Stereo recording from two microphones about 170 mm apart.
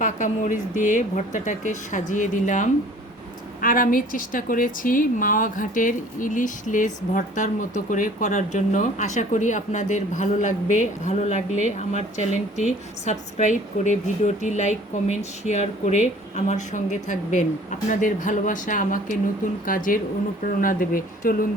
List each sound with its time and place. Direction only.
0.0 s a woman's voice: 50° left (ahead or behind)